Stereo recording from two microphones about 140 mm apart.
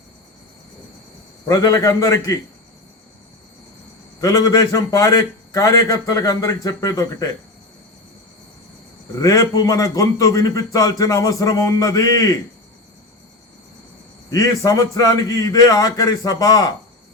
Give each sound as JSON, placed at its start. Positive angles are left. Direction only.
{"t": 1.5, "sound": "a man's voice", "side_deg": 25}
{"t": 4.2, "sound": "a man's voice", "side_deg": 25}
{"t": 9.2, "sound": "a man's voice", "side_deg": 25}
{"t": 14.3, "sound": "a man's voice", "side_deg": 25}